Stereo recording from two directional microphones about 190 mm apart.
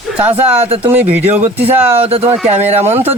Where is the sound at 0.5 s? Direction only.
30° right (ahead or behind).